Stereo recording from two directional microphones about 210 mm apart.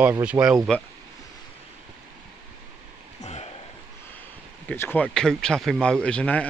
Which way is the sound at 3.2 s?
30° left (ahead or behind).